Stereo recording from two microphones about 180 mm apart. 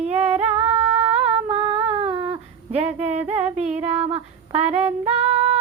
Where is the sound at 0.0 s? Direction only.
35° right (ahead or behind).